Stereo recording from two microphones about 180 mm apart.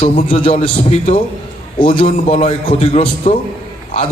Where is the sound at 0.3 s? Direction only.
30° left (ahead or behind).